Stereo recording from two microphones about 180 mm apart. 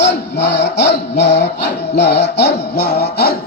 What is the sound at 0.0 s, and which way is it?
Music, 70° left (ahead or behind).